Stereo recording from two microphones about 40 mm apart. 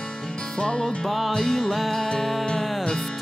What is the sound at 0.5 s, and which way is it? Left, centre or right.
Music, centre.